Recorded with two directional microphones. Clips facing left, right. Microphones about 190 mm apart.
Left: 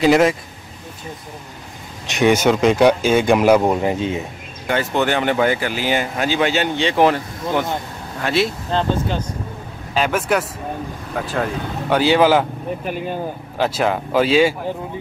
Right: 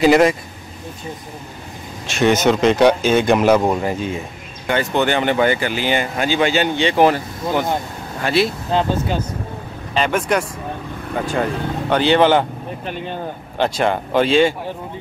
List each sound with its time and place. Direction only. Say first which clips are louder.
0.0 s speech: right 1 dB; centre (ahead or behind)
2.0 s speech: even; 15° left (ahead or behind)
3.9 s speech: left 2 dB; 20° left (ahead or behind)
4.6 s speech: right 1 dB; centre (ahead or behind)
9.9 s speech: even; 5° left (ahead or behind)